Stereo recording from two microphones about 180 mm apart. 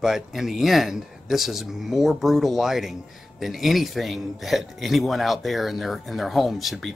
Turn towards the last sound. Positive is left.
turn(degrees=0)  # may be behind; listen again after turning